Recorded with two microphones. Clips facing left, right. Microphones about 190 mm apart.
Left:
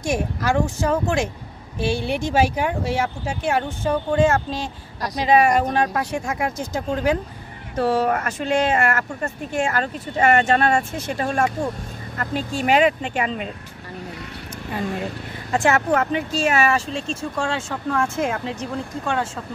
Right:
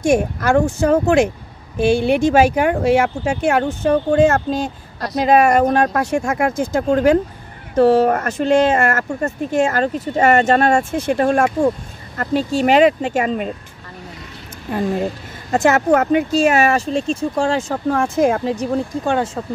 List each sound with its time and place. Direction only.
0.0 s speech: 50° right (ahead or behind); by 3.6 s 65° right (ahead or behind)
3.8 s speech: 50° right (ahead or behind)
12.2 s speech: 40° right (ahead or behind)
14.7 s speech: 45° right (ahead or behind)